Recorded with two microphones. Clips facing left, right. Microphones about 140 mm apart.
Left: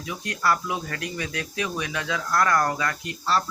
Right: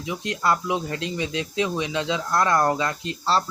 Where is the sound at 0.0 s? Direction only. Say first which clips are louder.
Right 2 dB; 20° right (ahead or behind).